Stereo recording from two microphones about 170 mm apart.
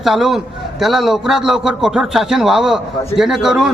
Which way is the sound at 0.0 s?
Centre (ahead or behind).